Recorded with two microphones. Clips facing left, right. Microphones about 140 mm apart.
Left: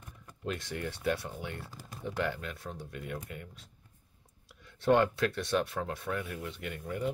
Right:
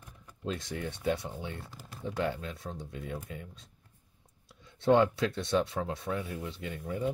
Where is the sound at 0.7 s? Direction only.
20° right (ahead or behind).